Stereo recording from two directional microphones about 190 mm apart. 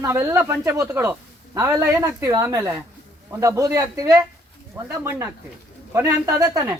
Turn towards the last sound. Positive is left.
turn(degrees=-15)  # may be behind; listen again after turning